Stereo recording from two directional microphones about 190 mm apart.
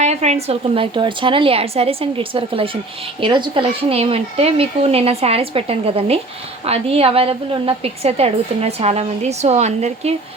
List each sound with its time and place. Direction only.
0.0 s a woman's voice: 35° right (ahead or behind)